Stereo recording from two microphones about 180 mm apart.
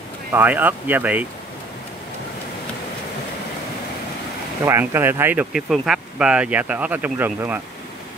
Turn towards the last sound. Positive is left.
turn(degrees=-10)  # may be behind; listen again after turning